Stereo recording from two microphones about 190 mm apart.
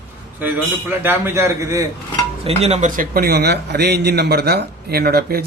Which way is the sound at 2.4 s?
35° right (ahead or behind).